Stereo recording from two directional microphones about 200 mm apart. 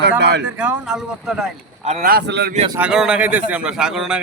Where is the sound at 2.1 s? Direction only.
50° right (ahead or behind).